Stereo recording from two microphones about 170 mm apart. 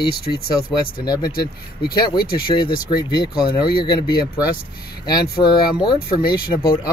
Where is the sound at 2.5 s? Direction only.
25° left (ahead or behind).